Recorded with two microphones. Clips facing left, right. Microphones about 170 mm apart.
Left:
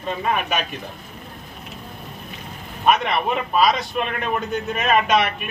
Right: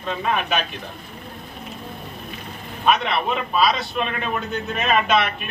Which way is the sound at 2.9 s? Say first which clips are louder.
Left 1 dB; 10° left (ahead or behind).